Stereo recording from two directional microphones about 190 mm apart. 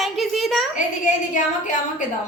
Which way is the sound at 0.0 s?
Centre (ahead or behind).